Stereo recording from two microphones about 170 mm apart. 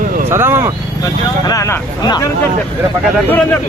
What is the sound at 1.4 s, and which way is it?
Speech, 20° left (ahead or behind).